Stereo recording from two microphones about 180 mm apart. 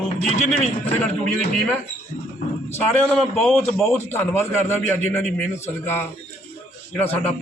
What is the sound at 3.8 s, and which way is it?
A man's voice, 10° left (ahead or behind).